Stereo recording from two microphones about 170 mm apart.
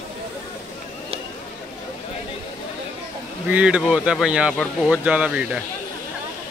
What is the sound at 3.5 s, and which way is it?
Speech, 5° right (ahead or behind).